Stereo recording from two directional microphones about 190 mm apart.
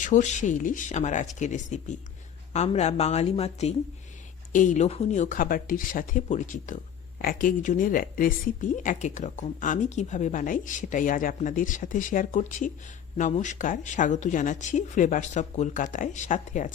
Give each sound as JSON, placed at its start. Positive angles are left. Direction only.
{"t": 0.0, "sound": "speech", "side_deg": 40}